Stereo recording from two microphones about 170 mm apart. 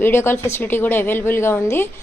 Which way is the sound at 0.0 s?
15° left (ahead or behind).